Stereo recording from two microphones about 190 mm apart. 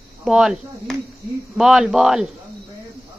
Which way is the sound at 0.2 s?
5° right (ahead or behind).